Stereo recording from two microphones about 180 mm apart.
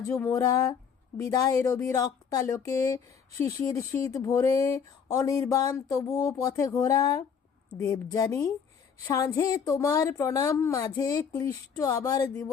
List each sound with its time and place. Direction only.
0.0 s a woman's voice: 15° left (ahead or behind)